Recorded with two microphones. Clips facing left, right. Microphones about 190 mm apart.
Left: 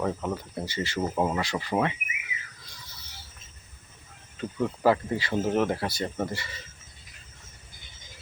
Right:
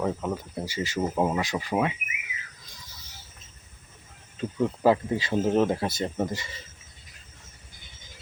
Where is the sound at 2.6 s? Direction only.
15° right (ahead or behind).